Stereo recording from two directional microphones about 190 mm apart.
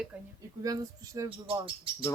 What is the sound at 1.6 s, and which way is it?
Speech, 30° right (ahead or behind).